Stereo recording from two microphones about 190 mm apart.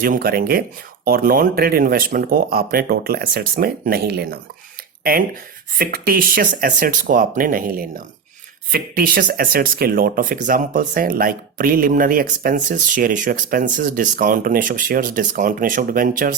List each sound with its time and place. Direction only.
0.0 s speech: 50° right (ahead or behind)